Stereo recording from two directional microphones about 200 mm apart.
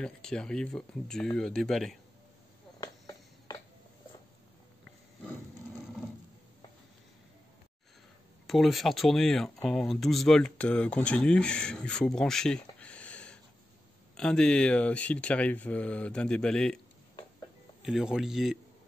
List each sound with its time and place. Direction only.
0.0 s speech: 5° left (ahead or behind)
2.8 s a sound: 15° left (ahead or behind)
8.5 s speech: centre (ahead or behind)
17.8 s speech: 5° right (ahead or behind)